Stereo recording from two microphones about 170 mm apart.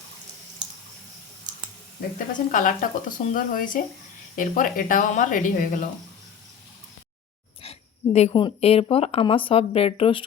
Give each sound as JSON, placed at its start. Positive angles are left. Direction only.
{"t": 2.0, "sound": "speech", "side_deg": 50}
{"t": 7.6, "sound": "speech", "side_deg": 35}